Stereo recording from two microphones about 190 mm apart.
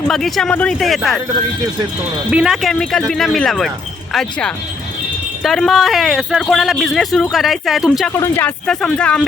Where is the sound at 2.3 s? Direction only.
5° right (ahead or behind).